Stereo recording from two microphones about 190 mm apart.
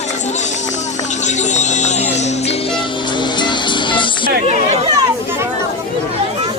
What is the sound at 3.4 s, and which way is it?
Music, 25° left (ahead or behind).